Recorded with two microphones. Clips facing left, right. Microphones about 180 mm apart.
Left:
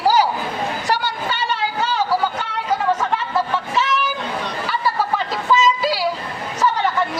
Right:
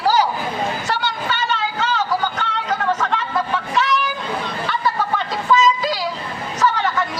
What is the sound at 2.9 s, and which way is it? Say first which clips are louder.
Chatter: even; 10° left (ahead or behind).